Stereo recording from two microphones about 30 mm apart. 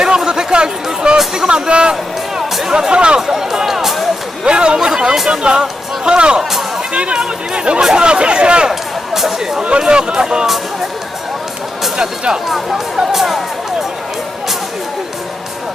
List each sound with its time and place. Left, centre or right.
0.3 s speech: right
2.4 s music: centre
2.9 s speech: right
3.2 s speech: centre
4.4 s speech: right
13.1 s speech: centre